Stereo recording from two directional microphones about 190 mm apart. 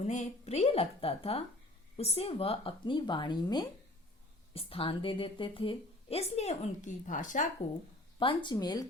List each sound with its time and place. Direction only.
0.0 s a woman's voice: 40° left (ahead or behind)
8.2 s speech: 25° left (ahead or behind)